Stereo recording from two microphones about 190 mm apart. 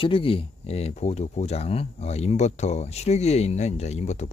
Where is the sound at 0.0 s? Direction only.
30° left (ahead or behind).